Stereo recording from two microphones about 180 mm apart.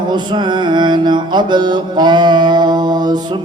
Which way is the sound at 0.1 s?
25° right (ahead or behind).